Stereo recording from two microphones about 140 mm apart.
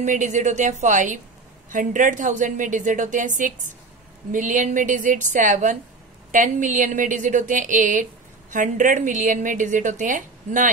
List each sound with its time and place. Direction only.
0.0 s a woman's voice: 60° right (ahead or behind)